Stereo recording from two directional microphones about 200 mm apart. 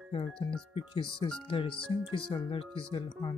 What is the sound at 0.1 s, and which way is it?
Speech, 25° left (ahead or behind).